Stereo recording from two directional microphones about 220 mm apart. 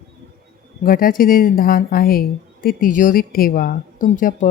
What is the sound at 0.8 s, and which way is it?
Speech, 40° left (ahead or behind).